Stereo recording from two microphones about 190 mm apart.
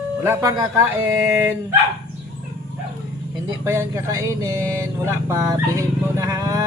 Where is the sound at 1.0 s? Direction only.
10° right (ahead or behind).